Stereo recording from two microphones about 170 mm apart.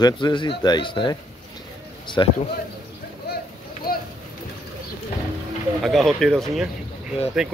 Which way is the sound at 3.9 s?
60° left (ahead or behind).